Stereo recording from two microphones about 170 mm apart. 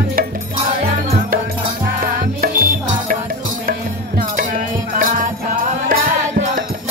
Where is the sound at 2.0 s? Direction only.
60° right (ahead or behind).